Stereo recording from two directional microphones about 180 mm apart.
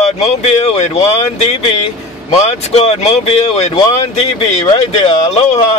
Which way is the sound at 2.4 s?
35° left (ahead or behind).